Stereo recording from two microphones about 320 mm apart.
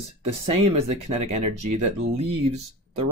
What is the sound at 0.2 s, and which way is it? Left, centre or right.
Speech, centre.